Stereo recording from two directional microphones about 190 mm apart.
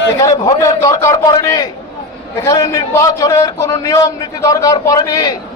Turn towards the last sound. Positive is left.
turn(degrees=20)  # may be behind; listen again after turning